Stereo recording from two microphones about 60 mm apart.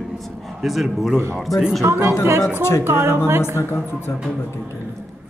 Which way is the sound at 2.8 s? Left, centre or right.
Right.